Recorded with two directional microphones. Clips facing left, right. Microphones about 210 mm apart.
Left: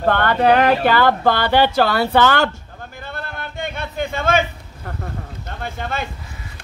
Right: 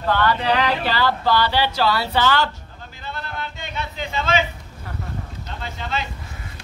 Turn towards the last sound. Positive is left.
turn(degrees=55)  # may be behind; listen again after turning